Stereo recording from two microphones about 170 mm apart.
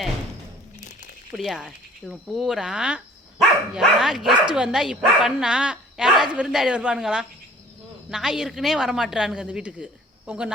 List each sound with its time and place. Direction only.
1.4 s speech: centre (ahead or behind)